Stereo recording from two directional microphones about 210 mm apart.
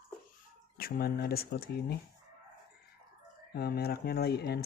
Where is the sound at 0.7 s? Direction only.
45° left (ahead or behind).